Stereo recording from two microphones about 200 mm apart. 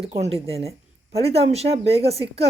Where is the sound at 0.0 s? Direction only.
30° right (ahead or behind).